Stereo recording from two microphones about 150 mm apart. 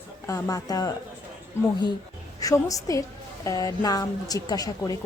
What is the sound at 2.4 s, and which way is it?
A woman's voice, 20° left (ahead or behind).